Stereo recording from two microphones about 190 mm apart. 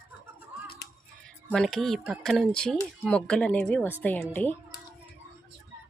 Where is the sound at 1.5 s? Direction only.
5° left (ahead or behind).